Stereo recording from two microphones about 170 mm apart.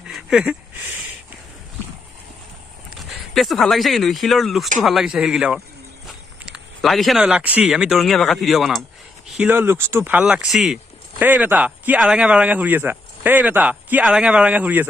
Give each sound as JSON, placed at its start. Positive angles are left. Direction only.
{"t": 0.1, "sound": "a sound", "side_deg": -5}
{"t": 2.9, "sound": "speech", "side_deg": 0}
{"t": 9.4, "sound": "speech", "side_deg": -15}